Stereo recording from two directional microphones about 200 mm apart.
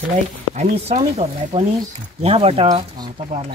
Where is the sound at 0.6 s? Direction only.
30° right (ahead or behind).